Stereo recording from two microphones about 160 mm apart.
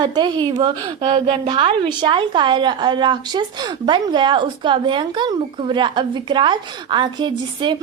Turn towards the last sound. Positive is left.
turn(degrees=-30)  # may be behind; listen again after turning